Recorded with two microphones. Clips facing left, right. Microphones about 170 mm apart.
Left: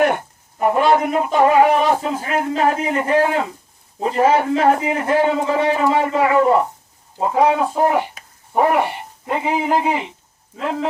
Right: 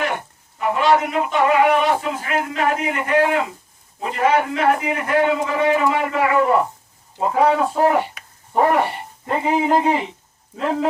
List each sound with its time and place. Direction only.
0.6 s speech: 45° left (ahead or behind); by 6.5 s 30° left (ahead or behind)
7.2 s speech: 15° left (ahead or behind); by 10.8 s centre (ahead or behind)